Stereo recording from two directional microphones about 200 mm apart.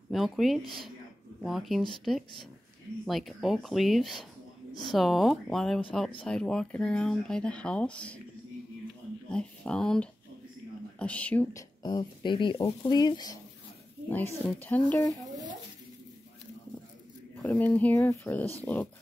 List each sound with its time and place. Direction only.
0.1 s speech: centre (ahead or behind)
9.3 s speech: 5° left (ahead or behind)
11.8 s speech: 20° left (ahead or behind)
14.1 s speech: 10° left (ahead or behind)
17.4 s speech: 10° left (ahead or behind)